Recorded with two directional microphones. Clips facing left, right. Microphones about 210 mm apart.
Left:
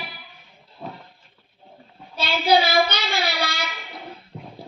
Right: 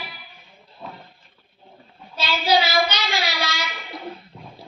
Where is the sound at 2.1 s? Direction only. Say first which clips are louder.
Left 2 dB; 55° left (ahead or behind).